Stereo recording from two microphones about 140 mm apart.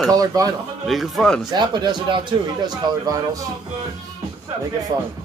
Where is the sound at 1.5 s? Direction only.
30° right (ahead or behind).